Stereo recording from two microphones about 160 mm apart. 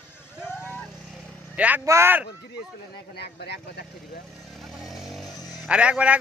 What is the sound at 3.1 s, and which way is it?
Speech, 90° left.